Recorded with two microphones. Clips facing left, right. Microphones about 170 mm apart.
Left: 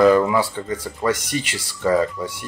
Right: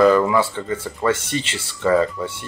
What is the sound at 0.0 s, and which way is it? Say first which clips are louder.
Speech: even; 10° left (ahead or behind).